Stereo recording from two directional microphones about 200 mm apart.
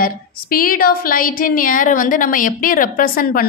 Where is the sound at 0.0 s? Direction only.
45° left (ahead or behind).